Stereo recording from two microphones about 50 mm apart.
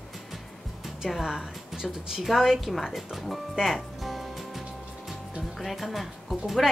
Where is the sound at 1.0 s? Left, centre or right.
Centre.